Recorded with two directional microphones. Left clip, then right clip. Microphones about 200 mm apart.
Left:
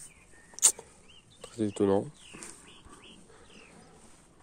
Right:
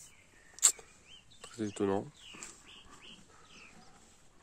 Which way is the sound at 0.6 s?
10° left (ahead or behind).